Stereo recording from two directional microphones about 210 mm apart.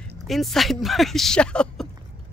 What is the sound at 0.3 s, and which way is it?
Speech, centre (ahead or behind).